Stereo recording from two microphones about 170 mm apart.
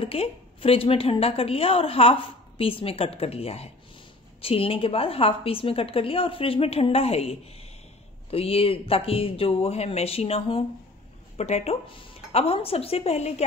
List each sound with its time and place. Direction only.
0.0 s a woman's voice: 35° left (ahead or behind)